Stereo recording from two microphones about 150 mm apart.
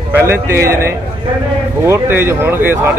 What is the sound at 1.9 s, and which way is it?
Speech, 15° right (ahead or behind).